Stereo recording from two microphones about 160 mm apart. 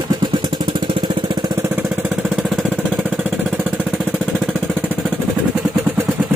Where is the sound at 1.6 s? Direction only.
10° right (ahead or behind).